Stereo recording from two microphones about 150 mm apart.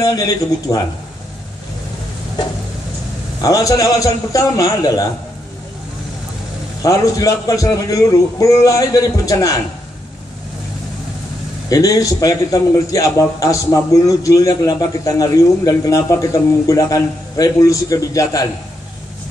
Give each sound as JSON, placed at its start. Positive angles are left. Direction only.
{"t": 0.0, "sound": "a man's voice", "side_deg": 25}
{"t": 3.3, "sound": "a man's voice", "side_deg": 25}
{"t": 6.8, "sound": "a man's voice", "side_deg": 25}
{"t": 11.7, "sound": "a man's voice", "side_deg": 25}